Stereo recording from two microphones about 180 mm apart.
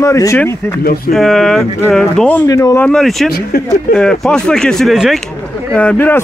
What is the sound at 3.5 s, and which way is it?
Speech, 60° left (ahead or behind).